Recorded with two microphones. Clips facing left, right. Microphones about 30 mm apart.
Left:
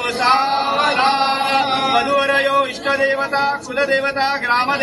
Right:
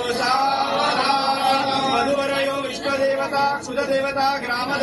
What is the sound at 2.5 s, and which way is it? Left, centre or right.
Speech, left.